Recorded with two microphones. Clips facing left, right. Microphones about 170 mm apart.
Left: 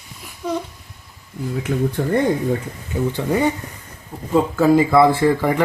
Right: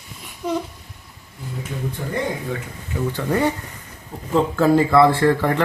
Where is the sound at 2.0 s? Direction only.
65° left (ahead or behind).